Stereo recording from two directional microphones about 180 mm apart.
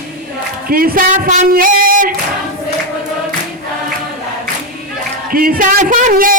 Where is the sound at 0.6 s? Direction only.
55° right (ahead or behind).